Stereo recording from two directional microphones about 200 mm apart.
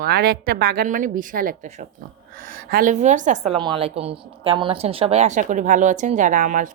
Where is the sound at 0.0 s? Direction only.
55° right (ahead or behind).